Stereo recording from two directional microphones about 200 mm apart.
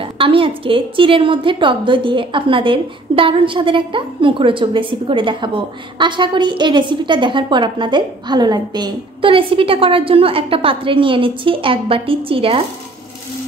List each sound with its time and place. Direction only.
0.0 s a woman's voice: 25° right (ahead or behind)